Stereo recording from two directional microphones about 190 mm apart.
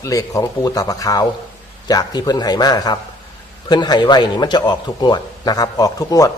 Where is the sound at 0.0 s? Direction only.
15° left (ahead or behind).